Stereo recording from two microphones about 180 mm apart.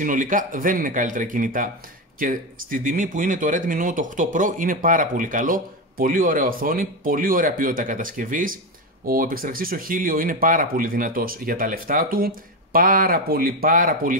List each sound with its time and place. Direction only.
0.0 s speech: 45° right (ahead or behind)